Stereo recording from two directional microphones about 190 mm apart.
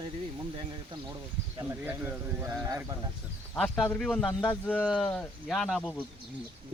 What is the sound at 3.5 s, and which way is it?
Speech, 5° left (ahead or behind).